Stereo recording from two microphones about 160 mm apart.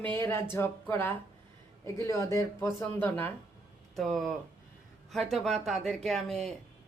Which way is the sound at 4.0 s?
Centre (ahead or behind).